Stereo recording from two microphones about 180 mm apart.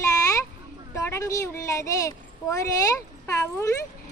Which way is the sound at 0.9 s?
15° left (ahead or behind).